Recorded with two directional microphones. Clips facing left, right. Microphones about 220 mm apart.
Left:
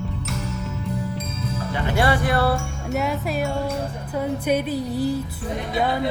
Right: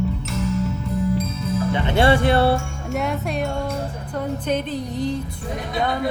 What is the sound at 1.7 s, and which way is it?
Music, 25° right (ahead or behind).